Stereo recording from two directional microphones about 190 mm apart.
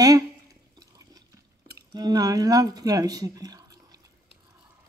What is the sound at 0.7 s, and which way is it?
Water, 20° right (ahead or behind).